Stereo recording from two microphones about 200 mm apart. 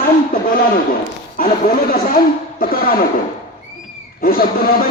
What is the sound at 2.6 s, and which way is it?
Speech, 45° left (ahead or behind).